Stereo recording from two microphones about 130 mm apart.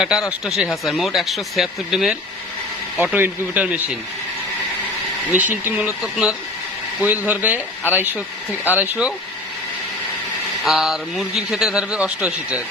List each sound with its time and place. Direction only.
0.0 s speech: 5° right (ahead or behind)
3.0 s speech: 15° right (ahead or behind)
5.3 s speech: 10° right (ahead or behind)
10.6 s speech: centre (ahead or behind)